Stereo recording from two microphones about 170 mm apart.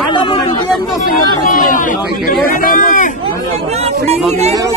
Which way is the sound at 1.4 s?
55° left (ahead or behind).